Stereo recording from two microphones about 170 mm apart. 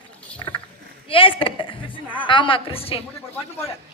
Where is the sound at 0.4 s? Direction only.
25° left (ahead or behind).